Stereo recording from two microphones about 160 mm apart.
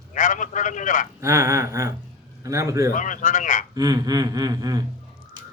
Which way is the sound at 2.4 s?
20° right (ahead or behind).